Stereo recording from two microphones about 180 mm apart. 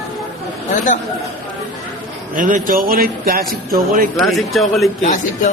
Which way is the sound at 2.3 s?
45° right (ahead or behind).